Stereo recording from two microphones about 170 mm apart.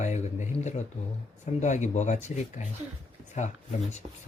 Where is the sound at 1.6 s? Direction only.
45° left (ahead or behind).